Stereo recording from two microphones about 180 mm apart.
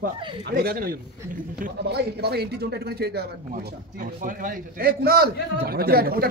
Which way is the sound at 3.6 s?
50° right (ahead or behind).